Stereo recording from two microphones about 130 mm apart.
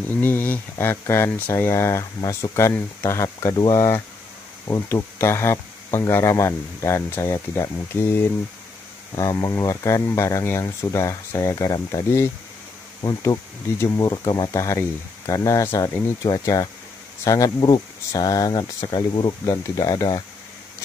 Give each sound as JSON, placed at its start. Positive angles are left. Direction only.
{"t": 0.2, "sound": "speech", "side_deg": 15}